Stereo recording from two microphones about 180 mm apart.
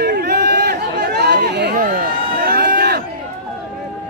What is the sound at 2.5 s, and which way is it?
Run, 55° right (ahead or behind).